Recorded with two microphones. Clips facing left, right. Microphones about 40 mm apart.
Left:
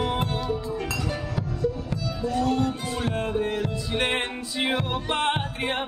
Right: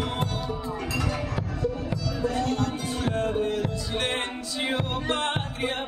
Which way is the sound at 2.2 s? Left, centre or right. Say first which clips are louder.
Left 2 dB; right.